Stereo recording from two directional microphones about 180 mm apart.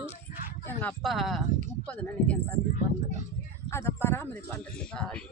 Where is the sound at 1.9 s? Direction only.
10° left (ahead or behind).